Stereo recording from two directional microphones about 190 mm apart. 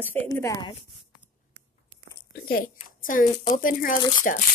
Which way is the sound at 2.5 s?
45° left (ahead or behind).